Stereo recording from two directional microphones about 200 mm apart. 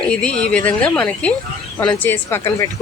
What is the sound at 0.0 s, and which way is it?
A woman's voice, 5° left (ahead or behind).